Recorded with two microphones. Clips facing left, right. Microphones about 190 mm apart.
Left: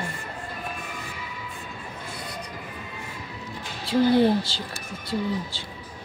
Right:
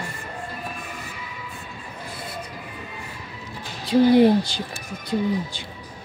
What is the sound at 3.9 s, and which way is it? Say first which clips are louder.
Speech: right 4 dB; 15° right (ahead or behind).